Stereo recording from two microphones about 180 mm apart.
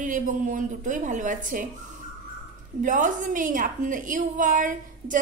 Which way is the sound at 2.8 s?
45° right (ahead or behind).